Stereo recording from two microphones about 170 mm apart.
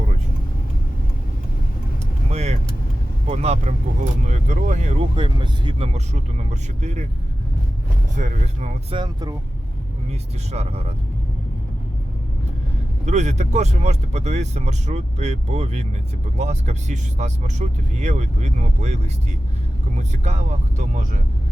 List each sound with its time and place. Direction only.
2.3 s vehicle: 40° right (ahead or behind)
3.2 s speech: 40° right (ahead or behind)
5.1 s speech: 30° right (ahead or behind)
8.1 s speech: 45° right (ahead or behind)
10.1 s speech: 40° right (ahead or behind)
13.1 s speech: 45° right (ahead or behind)
20.0 s speech: 45° right (ahead or behind)